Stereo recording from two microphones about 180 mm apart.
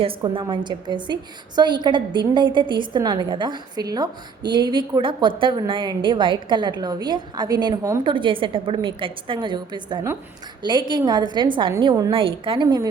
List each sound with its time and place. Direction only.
0.0 s a woman's voice: 30° right (ahead or behind)